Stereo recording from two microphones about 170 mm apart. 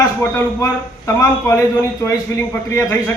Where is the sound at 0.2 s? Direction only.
15° left (ahead or behind).